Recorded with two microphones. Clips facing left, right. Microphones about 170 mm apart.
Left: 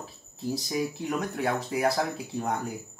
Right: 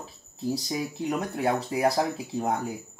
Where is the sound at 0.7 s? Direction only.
25° right (ahead or behind).